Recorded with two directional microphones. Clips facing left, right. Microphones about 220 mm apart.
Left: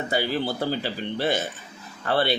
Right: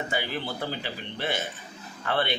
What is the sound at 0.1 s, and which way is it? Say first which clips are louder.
Speech: left 6 dB; 40° left (ahead or behind).